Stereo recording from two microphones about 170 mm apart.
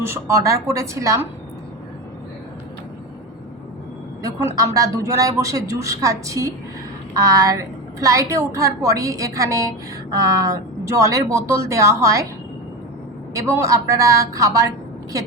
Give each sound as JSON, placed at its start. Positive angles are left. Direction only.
{"t": 0.0, "sound": "a woman's voice", "side_deg": -15}
{"t": 4.2, "sound": "a woman's voice", "side_deg": -20}
{"t": 13.3, "sound": "a woman's voice", "side_deg": -20}